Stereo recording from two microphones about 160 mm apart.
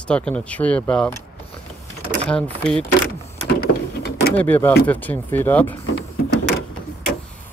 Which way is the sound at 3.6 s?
80° left.